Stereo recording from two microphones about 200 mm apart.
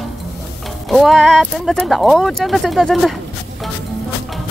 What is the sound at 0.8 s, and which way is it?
Speech, centre (ahead or behind).